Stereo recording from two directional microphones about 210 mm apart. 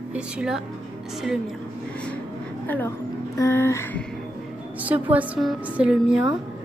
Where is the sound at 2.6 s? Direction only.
10° left (ahead or behind).